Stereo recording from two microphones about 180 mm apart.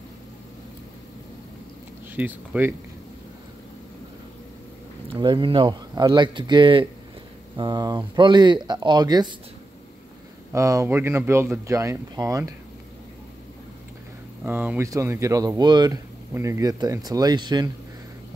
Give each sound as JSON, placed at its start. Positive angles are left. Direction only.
{"t": 2.1, "sound": "speech", "side_deg": -10}
{"t": 5.1, "sound": "speech", "side_deg": -25}
{"t": 10.5, "sound": "speech", "side_deg": -15}
{"t": 14.4, "sound": "speech", "side_deg": -10}